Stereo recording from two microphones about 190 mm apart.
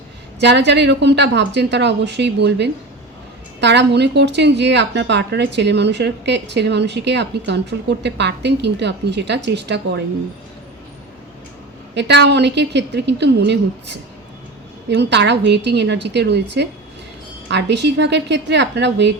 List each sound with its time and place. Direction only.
0.3 s speech: 65° right (ahead or behind)
11.9 s speech: 65° right (ahead or behind)